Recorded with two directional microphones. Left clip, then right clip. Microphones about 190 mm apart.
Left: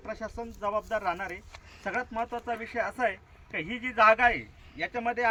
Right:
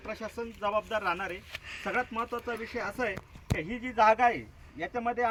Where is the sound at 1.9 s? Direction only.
20° left (ahead or behind).